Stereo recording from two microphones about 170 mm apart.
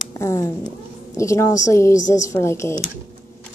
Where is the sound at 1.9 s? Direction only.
45° left (ahead or behind).